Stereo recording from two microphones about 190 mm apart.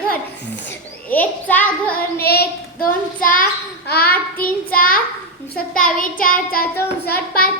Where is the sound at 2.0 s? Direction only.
55° left (ahead or behind).